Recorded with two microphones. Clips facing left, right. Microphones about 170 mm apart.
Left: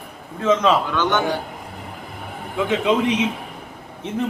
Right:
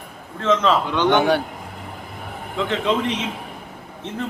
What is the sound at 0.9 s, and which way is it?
Speech, 20° right (ahead or behind).